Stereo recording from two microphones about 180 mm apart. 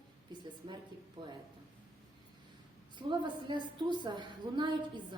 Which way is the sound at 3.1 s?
25° right (ahead or behind).